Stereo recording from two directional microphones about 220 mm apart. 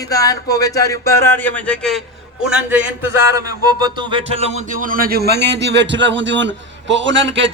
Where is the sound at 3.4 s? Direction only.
20° right (ahead or behind).